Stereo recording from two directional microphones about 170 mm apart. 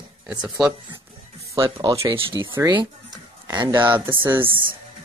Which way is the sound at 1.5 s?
20° right (ahead or behind).